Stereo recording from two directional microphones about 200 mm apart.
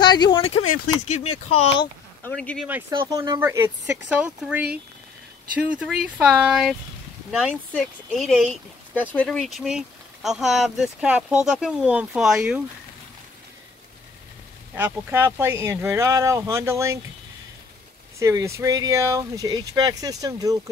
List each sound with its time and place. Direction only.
0.0 s a sound: 20° left (ahead or behind)
1.0 s speech: 35° left (ahead or behind)
2.2 s speech: 5° left (ahead or behind)
2.9 s speech: 20° right (ahead or behind)
14.8 s speech: 10° right (ahead or behind)
18.2 s speech: 15° right (ahead or behind)